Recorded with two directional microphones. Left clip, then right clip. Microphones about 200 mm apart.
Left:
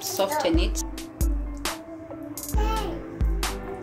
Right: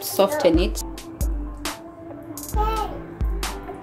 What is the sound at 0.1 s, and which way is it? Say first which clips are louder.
Speech: right 6 dB; 45° right (ahead or behind).